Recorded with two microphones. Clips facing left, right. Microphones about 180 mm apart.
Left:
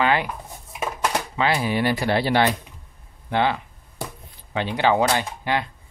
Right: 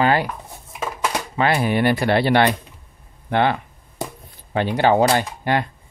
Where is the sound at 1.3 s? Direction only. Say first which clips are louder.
Right 5 dB; 50° right (ahead or behind).